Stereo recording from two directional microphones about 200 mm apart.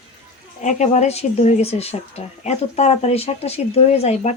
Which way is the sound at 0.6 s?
35° left (ahead or behind).